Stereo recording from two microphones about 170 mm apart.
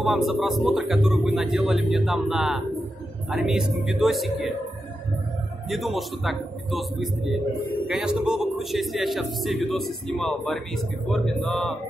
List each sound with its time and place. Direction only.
0.0 s speech: centre (ahead or behind)
5.7 s speech: centre (ahead or behind)